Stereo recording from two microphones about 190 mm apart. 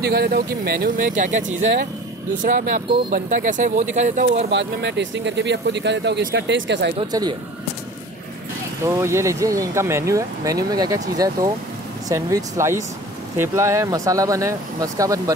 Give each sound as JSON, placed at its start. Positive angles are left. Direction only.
{"t": 0.0, "sound": "speech", "side_deg": -55}
{"t": 1.6, "sound": "speech", "side_deg": -70}
{"t": 2.3, "sound": "speech", "side_deg": -45}
{"t": 4.5, "sound": "speech", "side_deg": -70}
{"t": 7.0, "sound": "speech", "side_deg": -20}
{"t": 8.8, "sound": "speech", "side_deg": -15}